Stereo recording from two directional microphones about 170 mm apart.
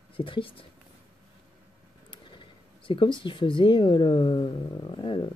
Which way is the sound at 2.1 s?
30° left (ahead or behind).